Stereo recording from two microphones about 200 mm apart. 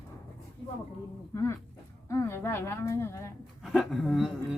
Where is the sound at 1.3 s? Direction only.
15° left (ahead or behind).